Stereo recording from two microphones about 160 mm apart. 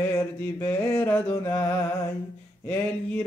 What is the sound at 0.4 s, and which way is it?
Mantra, 10° left (ahead or behind).